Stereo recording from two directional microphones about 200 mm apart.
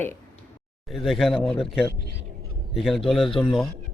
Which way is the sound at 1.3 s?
25° left (ahead or behind).